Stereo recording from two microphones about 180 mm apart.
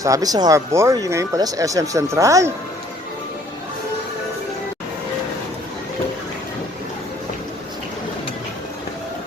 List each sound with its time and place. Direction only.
0.0 s speech: 20° right (ahead or behind)